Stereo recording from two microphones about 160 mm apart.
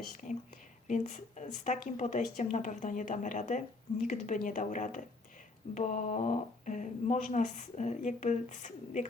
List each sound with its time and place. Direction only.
0.9 s speech: 50° left (ahead or behind)